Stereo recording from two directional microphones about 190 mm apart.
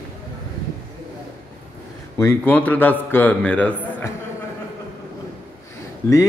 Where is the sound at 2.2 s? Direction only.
10° left (ahead or behind).